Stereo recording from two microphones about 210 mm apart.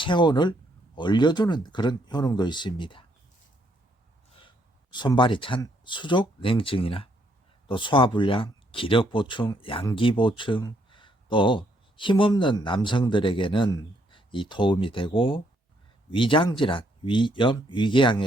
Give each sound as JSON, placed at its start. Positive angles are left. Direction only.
{"t": 0.0, "sound": "speech", "side_deg": 20}
{"t": 4.9, "sound": "speech", "side_deg": 20}